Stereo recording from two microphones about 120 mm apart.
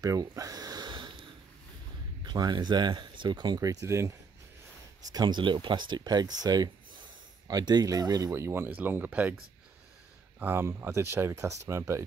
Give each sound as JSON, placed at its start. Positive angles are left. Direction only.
{"t": 0.0, "sound": "a sound", "side_deg": -30}
{"t": 2.2, "sound": "speech", "side_deg": -35}
{"t": 5.1, "sound": "speech", "side_deg": -40}
{"t": 10.4, "sound": "speech", "side_deg": -15}